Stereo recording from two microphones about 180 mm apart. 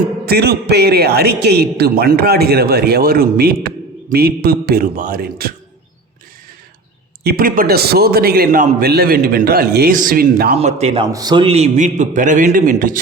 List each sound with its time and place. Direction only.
0.3 s a man's voice: 60° right (ahead or behind)
7.3 s a man's voice: 55° right (ahead or behind)
10.6 s a man's voice: 35° right (ahead or behind)
11.1 s a man's voice: 20° right (ahead or behind); by 13.0 s 50° right (ahead or behind)